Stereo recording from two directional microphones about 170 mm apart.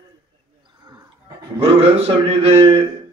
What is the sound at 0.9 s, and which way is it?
Music, 20° right (ahead or behind).